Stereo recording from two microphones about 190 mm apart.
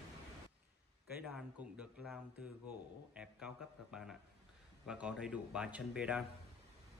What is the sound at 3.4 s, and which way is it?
Speech, 5° right (ahead or behind).